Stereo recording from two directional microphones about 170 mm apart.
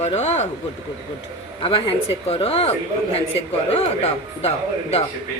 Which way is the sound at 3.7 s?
40° left (ahead or behind).